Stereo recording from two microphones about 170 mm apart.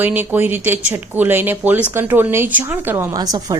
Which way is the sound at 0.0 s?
10° right (ahead or behind).